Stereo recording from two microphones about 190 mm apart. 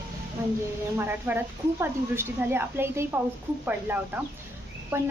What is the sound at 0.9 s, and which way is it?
Speech, 10° right (ahead or behind).